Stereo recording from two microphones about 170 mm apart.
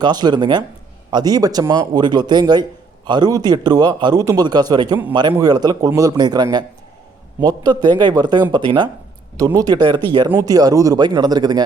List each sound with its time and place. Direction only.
0.0 s a man's voice: 25° right (ahead or behind)